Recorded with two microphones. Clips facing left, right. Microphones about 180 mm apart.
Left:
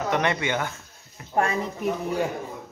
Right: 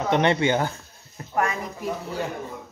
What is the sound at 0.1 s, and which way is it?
Speech, 30° right (ahead or behind).